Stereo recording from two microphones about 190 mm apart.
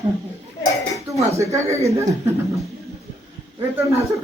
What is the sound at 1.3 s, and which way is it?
Speech, 15° right (ahead or behind).